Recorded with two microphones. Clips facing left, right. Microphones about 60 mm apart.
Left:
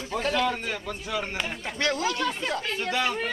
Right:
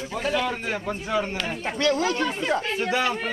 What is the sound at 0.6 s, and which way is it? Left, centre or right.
A man's voice, right.